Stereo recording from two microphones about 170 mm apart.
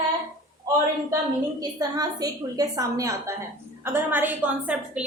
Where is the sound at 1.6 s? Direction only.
20° right (ahead or behind).